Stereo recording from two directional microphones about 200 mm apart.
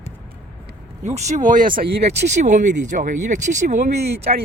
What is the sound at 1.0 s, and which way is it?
Speech, 35° right (ahead or behind).